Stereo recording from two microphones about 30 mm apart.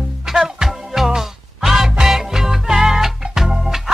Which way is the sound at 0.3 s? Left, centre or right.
Centre.